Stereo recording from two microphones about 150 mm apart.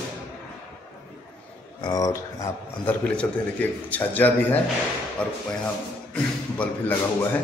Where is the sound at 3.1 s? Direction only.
10° left (ahead or behind).